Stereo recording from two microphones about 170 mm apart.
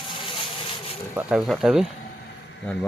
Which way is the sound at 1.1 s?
5° right (ahead or behind).